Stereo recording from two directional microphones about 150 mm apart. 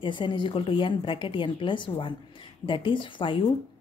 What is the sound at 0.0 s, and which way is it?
Speech, 35° left (ahead or behind).